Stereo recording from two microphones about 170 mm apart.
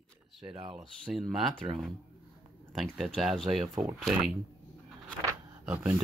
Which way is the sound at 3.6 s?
25° right (ahead or behind).